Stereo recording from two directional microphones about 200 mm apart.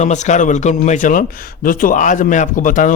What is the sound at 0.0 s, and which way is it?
Speech, 35° left (ahead or behind).